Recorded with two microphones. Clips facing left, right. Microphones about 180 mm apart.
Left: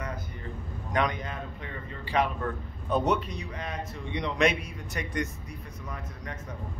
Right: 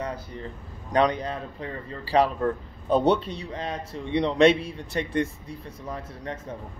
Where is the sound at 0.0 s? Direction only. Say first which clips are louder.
Right 5 dB; 30° right (ahead or behind).